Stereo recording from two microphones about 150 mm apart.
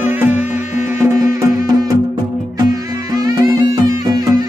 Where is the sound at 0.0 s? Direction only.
15° right (ahead or behind).